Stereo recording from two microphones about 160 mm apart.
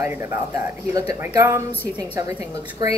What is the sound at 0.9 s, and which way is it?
Speech, 20° right (ahead or behind).